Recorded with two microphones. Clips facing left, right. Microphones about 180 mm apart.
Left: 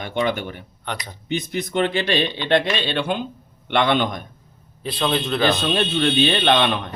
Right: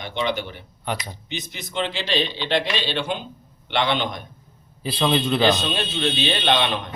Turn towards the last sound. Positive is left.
turn(degrees=55)  # may be behind; listen again after turning